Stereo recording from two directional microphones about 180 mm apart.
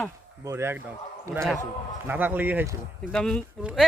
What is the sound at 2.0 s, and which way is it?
Speech, 10° right (ahead or behind).